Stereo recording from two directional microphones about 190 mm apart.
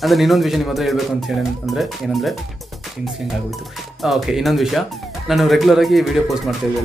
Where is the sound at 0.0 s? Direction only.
Centre (ahead or behind).